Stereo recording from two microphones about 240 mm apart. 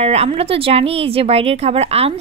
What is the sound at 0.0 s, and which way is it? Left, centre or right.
Speech, right.